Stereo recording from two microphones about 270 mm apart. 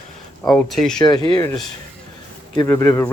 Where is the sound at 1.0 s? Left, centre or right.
Centre.